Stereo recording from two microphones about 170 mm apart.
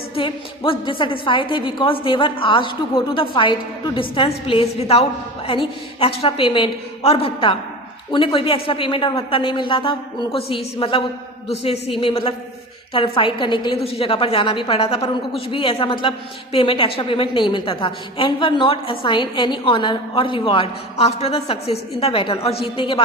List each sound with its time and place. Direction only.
0.2 s a woman's voice: 30° left (ahead or behind)